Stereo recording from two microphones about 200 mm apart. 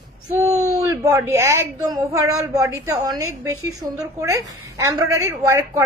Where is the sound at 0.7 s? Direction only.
15° right (ahead or behind).